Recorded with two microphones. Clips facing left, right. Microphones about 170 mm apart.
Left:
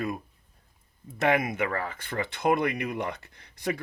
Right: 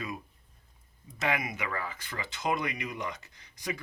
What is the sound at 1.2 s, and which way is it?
Speech, 55° left (ahead or behind).